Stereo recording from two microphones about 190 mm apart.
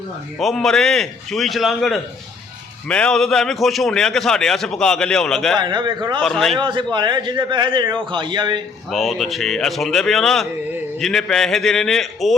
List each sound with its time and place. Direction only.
0.3 s a man's voice: centre (ahead or behind)
5.5 s a man's voice: 25° right (ahead or behind)
6.2 s a man's voice: centre (ahead or behind)
6.6 s a man's voice: 25° right (ahead or behind)
8.9 s a man's voice: centre (ahead or behind)